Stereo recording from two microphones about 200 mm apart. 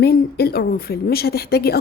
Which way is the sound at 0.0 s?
50° left (ahead or behind).